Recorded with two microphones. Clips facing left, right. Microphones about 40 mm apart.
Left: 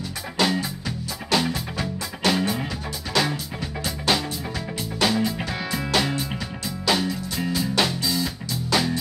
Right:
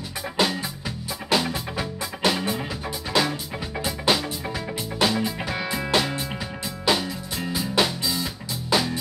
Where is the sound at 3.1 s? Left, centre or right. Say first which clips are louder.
Even; centre.